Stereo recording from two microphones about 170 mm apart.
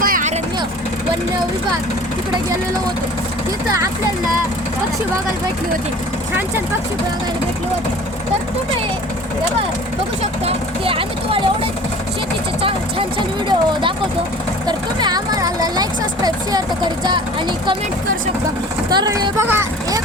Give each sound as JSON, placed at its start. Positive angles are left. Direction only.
{"t": 0.0, "sound": "vehicle", "side_deg": -50}
{"t": 10.4, "sound": "speech", "side_deg": -35}
{"t": 12.6, "sound": "speech", "side_deg": -30}
{"t": 18.9, "sound": "speech", "side_deg": -20}